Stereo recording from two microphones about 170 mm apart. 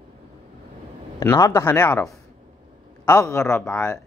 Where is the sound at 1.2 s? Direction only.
15° left (ahead or behind).